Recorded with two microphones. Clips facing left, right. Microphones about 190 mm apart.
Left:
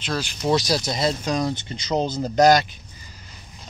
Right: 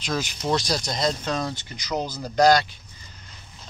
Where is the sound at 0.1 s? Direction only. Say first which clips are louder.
Left 1 dB; 10° right (ahead or behind).